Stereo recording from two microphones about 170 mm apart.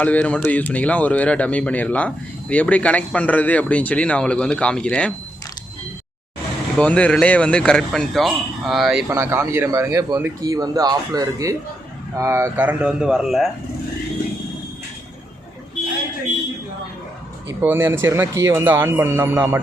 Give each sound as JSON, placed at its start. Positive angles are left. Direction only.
{"t": 0.0, "sound": "speech", "side_deg": 10}
{"t": 6.7, "sound": "speech", "side_deg": 5}
{"t": 9.0, "sound": "speech", "side_deg": -15}
{"t": 17.6, "sound": "speech", "side_deg": -15}